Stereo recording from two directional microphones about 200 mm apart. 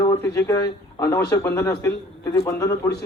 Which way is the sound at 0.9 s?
15° left (ahead or behind).